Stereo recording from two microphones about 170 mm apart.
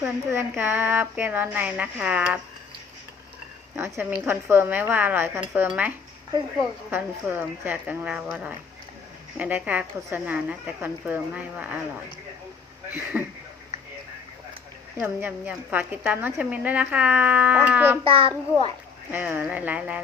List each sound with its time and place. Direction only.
0.0 s a woman's voice: 15° right (ahead or behind)
3.8 s a woman's voice: 10° right (ahead or behind)
6.9 s a woman's voice: 10° right (ahead or behind)
13.1 s a woman's voice: 10° right (ahead or behind)
14.9 s a woman's voice: 10° right (ahead or behind)
18.0 s a child's voice: 35° right (ahead or behind)
19.1 s a woman's voice: 10° right (ahead or behind)